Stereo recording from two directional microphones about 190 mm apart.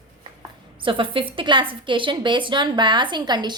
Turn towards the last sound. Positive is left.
turn(degrees=-25)  # may be behind; listen again after turning